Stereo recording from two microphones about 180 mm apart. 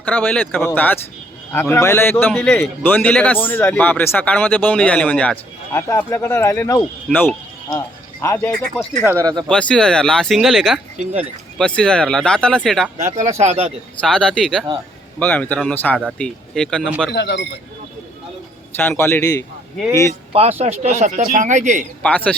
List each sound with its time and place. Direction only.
0.0 s speech: 10° left (ahead or behind)
8.5 s speech: 5° left (ahead or behind)
9.0 s speech: 20° right (ahead or behind)
9.5 s speech: 5° left (ahead or behind)
13.1 s speech: 40° right (ahead or behind)
14.0 s speech: 5° left (ahead or behind)
17.1 s speech: 70° left (ahead or behind)
18.8 s speech: 10° left (ahead or behind)
20.3 s speech: 35° right (ahead or behind)
22.0 s speech: 5° left (ahead or behind)